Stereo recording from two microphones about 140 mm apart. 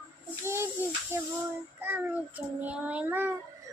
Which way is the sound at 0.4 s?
20° right (ahead or behind).